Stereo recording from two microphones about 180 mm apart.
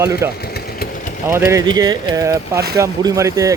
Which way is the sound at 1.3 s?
15° right (ahead or behind).